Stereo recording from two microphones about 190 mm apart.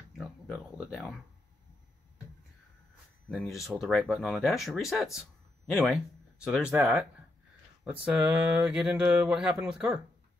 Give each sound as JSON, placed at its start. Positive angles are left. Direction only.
{"t": 0.2, "sound": "a sound", "side_deg": 0}
{"t": 3.3, "sound": "speech", "side_deg": 0}
{"t": 6.4, "sound": "speech", "side_deg": -5}